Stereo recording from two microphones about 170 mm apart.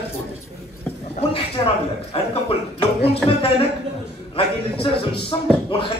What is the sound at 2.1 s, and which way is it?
A woman's voice, 35° left (ahead or behind).